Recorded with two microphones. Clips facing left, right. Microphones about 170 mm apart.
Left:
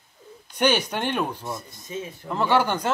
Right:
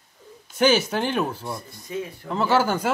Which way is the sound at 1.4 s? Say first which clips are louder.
Right 1 dB; 20° left (ahead or behind).